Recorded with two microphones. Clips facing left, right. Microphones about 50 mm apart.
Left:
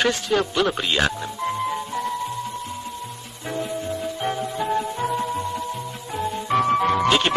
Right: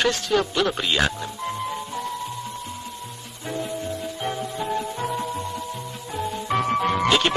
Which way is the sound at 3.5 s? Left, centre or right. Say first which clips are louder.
Left 2 dB; centre.